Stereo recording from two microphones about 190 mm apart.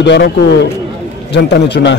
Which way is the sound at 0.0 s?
65° left (ahead or behind).